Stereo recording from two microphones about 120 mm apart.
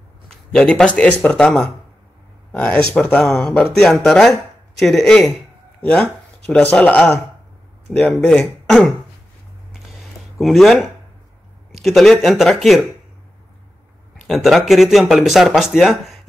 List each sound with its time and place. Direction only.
0.3 s speech: 5° left (ahead or behind)
9.9 s a sound: centre (ahead or behind)
11.8 s speech: centre (ahead or behind)
14.2 s speech: centre (ahead or behind)